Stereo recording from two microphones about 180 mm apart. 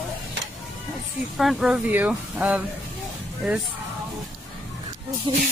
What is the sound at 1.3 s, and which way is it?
Speech, centre (ahead or behind).